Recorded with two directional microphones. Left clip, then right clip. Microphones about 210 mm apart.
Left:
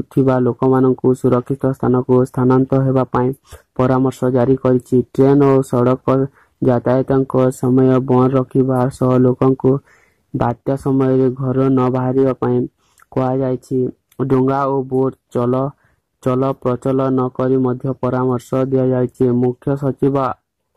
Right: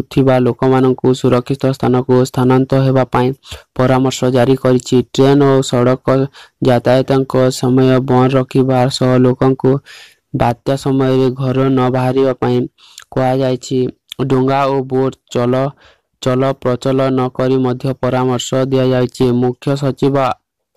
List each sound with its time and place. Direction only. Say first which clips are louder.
0.2 s speech: right 3 dB; 35° right (ahead or behind)